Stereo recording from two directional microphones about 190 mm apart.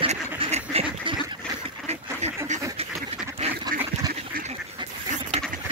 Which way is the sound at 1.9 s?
35° right (ahead or behind).